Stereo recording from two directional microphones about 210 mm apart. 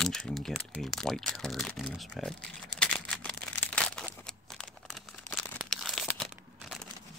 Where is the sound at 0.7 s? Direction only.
Centre (ahead or behind).